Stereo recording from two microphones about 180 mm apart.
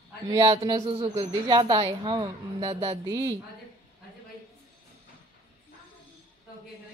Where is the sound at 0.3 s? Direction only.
25° right (ahead or behind).